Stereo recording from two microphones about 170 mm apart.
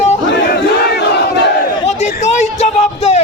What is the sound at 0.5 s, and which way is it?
Battle cry, 75° left (ahead or behind).